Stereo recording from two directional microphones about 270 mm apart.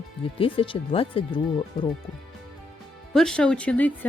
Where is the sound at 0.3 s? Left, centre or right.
Centre.